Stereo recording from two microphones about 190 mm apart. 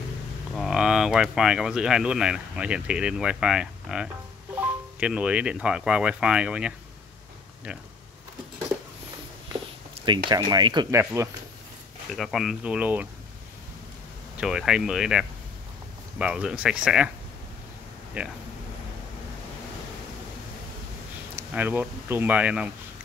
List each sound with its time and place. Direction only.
0.6 s speech: 5° right (ahead or behind)
10.0 s speech: 25° right (ahead or behind)
12.2 s speech: centre (ahead or behind)
14.4 s speech: 5° right (ahead or behind)
21.4 s speech: 10° right (ahead or behind)